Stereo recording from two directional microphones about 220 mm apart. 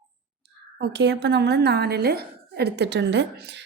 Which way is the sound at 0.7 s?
50° right (ahead or behind).